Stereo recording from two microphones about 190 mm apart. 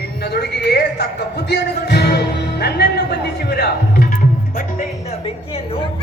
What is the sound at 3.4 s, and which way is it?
Speech, 55° left (ahead or behind).